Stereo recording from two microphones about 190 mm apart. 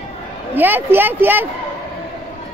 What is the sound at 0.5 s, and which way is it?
Speech, 10° right (ahead or behind).